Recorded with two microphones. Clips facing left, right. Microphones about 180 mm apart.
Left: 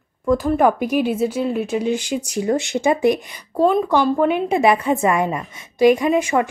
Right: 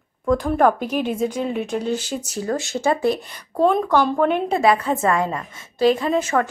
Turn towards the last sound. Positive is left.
turn(degrees=10)  # may be behind; listen again after turning